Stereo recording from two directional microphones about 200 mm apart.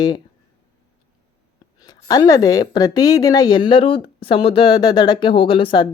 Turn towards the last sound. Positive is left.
turn(degrees=25)  # may be behind; listen again after turning